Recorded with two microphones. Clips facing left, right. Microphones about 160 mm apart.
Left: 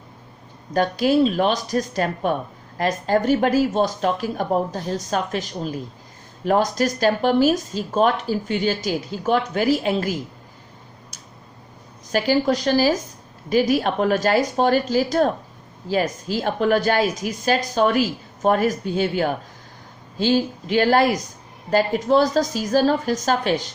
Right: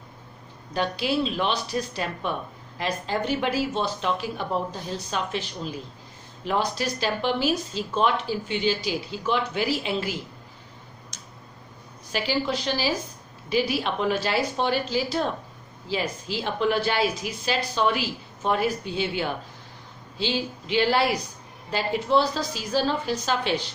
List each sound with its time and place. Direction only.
0.7 s speech: 45° left (ahead or behind)
11.1 s tick-tock: 10° left (ahead or behind)
12.1 s speech: 45° left (ahead or behind)